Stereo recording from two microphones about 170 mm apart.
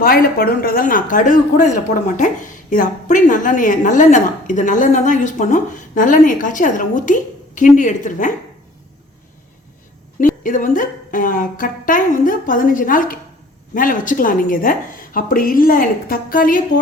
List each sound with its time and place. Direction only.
0.0 s a woman's voice: 60° left (ahead or behind)
10.2 s a woman's voice: 50° left (ahead or behind)